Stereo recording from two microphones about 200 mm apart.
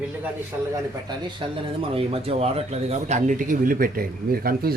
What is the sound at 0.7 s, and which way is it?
A man's voice, 20° right (ahead or behind).